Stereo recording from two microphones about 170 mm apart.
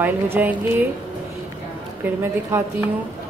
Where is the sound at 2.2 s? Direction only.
15° right (ahead or behind).